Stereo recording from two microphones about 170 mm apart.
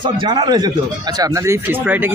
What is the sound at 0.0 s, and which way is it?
Speech, 25° right (ahead or behind).